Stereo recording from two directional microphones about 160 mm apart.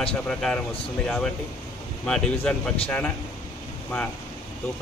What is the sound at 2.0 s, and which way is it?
Speech, 5° left (ahead or behind).